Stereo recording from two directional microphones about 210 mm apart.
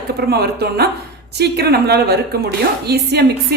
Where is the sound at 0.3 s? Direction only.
50° right (ahead or behind).